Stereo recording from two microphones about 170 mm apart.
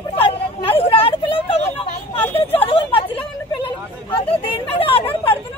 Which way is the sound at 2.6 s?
35° left (ahead or behind).